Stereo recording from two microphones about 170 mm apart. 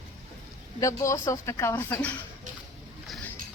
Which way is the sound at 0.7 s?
20° left (ahead or behind).